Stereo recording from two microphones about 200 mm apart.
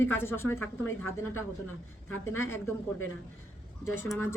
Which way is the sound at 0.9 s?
90° left.